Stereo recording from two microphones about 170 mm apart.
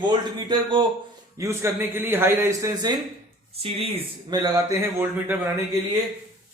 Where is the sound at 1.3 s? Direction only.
15° right (ahead or behind).